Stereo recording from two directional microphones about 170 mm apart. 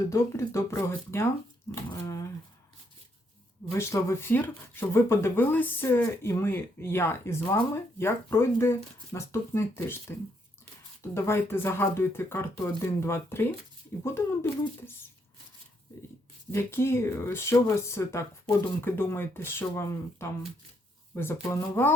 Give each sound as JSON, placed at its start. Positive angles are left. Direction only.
{"t": 0.1, "sound": "speech", "side_deg": 15}
{"t": 3.8, "sound": "speech", "side_deg": 15}
{"t": 16.5, "sound": "speech", "side_deg": 15}
{"t": 21.4, "sound": "speech", "side_deg": 15}